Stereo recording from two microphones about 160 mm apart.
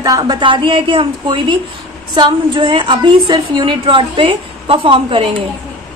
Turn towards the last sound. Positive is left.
turn(degrees=-35)  # may be behind; listen again after turning